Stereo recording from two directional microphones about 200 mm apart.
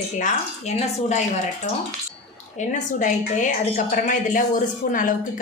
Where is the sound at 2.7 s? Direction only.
40° left (ahead or behind).